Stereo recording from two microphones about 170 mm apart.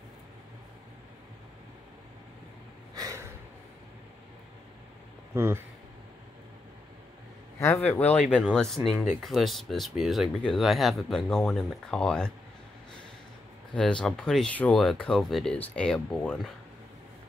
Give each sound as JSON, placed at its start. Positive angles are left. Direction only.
{"t": 2.9, "sound": "gasp", "side_deg": -20}
{"t": 5.3, "sound": "speech", "side_deg": -15}
{"t": 7.6, "sound": "speech", "side_deg": 15}
{"t": 13.7, "sound": "speech", "side_deg": 5}